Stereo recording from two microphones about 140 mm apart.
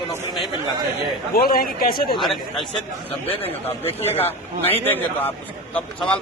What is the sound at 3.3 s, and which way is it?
Speech, 45° left (ahead or behind).